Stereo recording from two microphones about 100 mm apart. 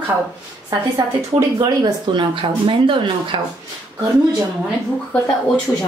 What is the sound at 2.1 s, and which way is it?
Speech, 55° right (ahead or behind).